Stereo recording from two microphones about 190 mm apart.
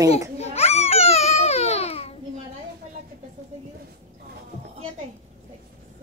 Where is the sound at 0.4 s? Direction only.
35° left (ahead or behind).